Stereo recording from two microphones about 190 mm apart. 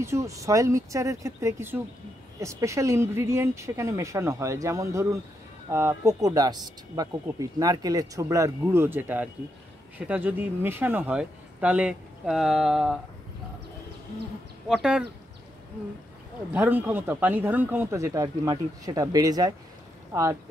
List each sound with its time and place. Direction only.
0.0 s a man's voice: 15° right (ahead or behind)
14.7 s speech: 5° right (ahead or behind)
16.5 s a man's voice: 10° right (ahead or behind)